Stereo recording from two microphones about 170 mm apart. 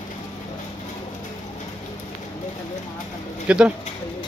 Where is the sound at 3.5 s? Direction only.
5° right (ahead or behind).